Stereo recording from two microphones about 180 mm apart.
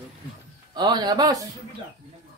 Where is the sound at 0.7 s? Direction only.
25° right (ahead or behind).